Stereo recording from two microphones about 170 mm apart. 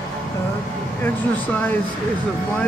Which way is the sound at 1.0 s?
10° left (ahead or behind).